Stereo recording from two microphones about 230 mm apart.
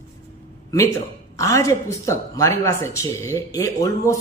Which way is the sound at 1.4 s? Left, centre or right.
Centre.